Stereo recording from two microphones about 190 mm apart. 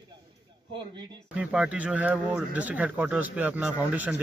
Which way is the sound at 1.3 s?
5° right (ahead or behind).